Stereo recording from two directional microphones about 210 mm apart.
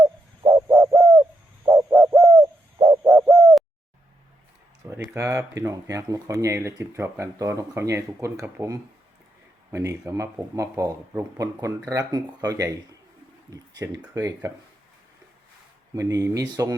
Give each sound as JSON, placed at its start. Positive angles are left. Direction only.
{"t": 0.0, "sound": "bird", "side_deg": -15}
{"t": 4.9, "sound": "speech", "side_deg": -15}
{"t": 16.0, "sound": "speech", "side_deg": -15}